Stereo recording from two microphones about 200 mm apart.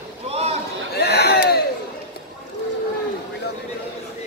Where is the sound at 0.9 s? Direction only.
55° left (ahead or behind).